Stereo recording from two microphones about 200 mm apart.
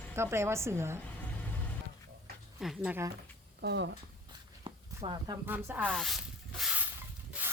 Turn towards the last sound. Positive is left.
turn(degrees=-5)  # may be behind; listen again after turning